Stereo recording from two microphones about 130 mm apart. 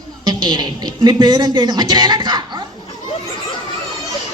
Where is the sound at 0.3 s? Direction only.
35° right (ahead or behind).